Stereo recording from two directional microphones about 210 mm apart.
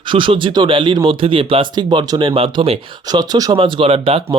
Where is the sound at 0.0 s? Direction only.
25° right (ahead or behind).